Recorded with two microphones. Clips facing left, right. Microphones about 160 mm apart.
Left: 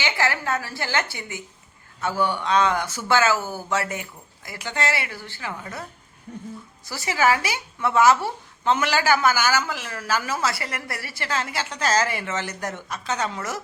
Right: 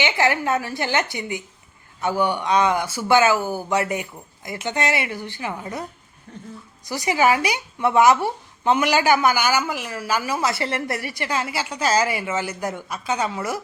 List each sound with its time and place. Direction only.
0.0 s a woman's voice: 20° right (ahead or behind)
6.8 s speech: 15° right (ahead or behind)
10.5 s speech: 25° right (ahead or behind); by 13.6 s 10° right (ahead or behind)